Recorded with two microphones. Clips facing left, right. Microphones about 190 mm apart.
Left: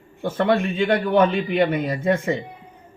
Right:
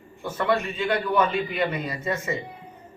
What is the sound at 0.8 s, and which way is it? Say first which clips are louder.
A man's voice: left 6 dB; 55° left (ahead or behind).